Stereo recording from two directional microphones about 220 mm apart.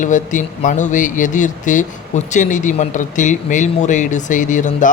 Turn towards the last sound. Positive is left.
turn(degrees=35)  # may be behind; listen again after turning